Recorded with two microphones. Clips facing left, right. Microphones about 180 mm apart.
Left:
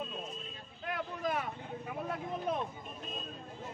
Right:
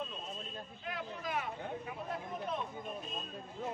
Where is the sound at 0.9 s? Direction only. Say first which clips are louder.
Left 4 dB; 50° left (ahead or behind).